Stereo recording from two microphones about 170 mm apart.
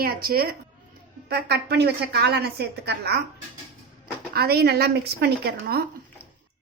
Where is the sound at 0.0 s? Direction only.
60° right (ahead or behind).